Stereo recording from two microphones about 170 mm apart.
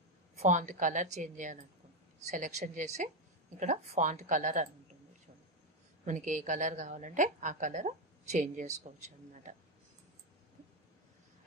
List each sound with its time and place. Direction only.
0.4 s a woman's voice: 45° right (ahead or behind)
6.0 s a woman's voice: 50° right (ahead or behind)